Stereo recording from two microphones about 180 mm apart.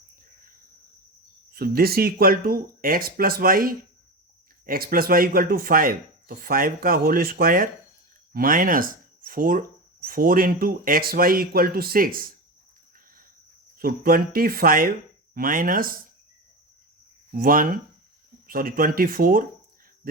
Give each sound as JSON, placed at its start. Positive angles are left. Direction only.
{"t": 1.5, "sound": "speech", "side_deg": -55}
{"t": 13.7, "sound": "speech", "side_deg": -55}
{"t": 17.3, "sound": "speech", "side_deg": -50}